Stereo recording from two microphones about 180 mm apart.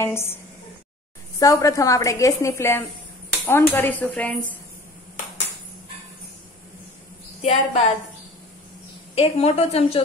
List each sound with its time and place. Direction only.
0.0 s a woman's voice: 15° left (ahead or behind)
1.4 s a woman's voice: 20° left (ahead or behind)
7.4 s a woman's voice: 35° left (ahead or behind)
9.1 s a woman's voice: 35° left (ahead or behind)